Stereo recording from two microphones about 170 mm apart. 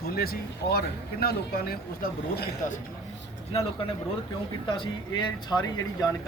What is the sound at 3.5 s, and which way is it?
Speech, 35° left (ahead or behind).